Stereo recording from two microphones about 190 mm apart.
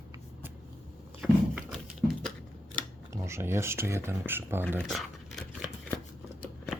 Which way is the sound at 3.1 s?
15° right (ahead or behind).